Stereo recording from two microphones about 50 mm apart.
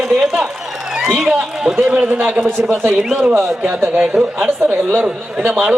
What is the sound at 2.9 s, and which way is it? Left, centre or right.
Speech, centre.